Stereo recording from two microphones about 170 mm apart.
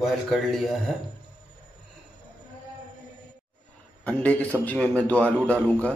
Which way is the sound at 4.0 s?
10° left (ahead or behind).